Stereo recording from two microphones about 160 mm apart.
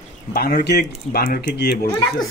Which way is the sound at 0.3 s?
65° left (ahead or behind).